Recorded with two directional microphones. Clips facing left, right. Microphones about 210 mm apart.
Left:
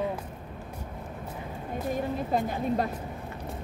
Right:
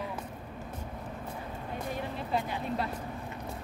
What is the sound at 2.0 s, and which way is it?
Speech, 45° left (ahead or behind).